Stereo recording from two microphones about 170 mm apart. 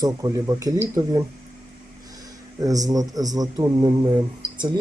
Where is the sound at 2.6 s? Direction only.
20° right (ahead or behind).